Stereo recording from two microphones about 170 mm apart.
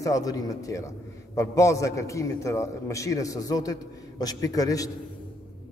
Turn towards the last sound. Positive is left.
turn(degrees=20)  # may be behind; listen again after turning